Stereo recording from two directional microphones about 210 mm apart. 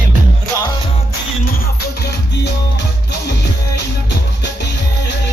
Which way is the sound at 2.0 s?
50° left (ahead or behind).